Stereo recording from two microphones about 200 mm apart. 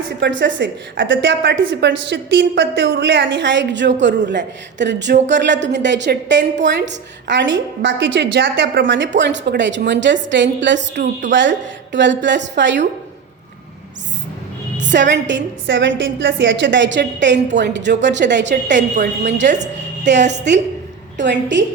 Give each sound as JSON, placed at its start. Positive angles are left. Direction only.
{"t": 0.2, "sound": "a woman's voice", "side_deg": -65}
{"t": 14.8, "sound": "a woman's voice", "side_deg": -60}
{"t": 18.5, "sound": "a woman's voice", "side_deg": -40}
{"t": 21.2, "sound": "a woman's voice", "side_deg": -60}